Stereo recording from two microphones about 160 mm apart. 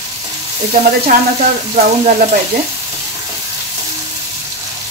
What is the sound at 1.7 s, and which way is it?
Frying, 50° right (ahead or behind).